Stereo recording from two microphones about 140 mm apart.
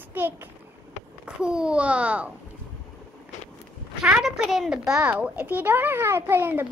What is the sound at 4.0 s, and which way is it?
A child's voice, 5° right (ahead or behind).